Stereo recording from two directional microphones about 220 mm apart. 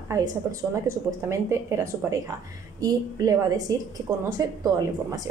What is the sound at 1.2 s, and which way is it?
A woman's voice, 10° right (ahead or behind).